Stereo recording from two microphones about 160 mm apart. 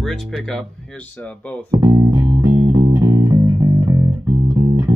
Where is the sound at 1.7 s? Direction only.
20° right (ahead or behind).